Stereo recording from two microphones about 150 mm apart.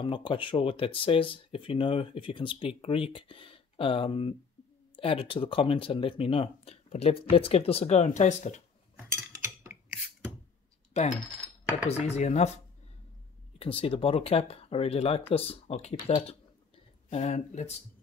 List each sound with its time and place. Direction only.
0.0 s speech: 35° left (ahead or behind); by 8.6 s 50° left (ahead or behind)
10.9 s coin: 45° left (ahead or behind)
11.9 s speech: 45° left (ahead or behind)
13.6 s speech: 40° left (ahead or behind)